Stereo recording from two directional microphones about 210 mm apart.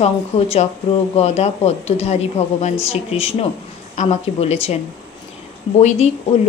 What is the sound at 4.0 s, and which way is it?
Speech, 30° left (ahead or behind).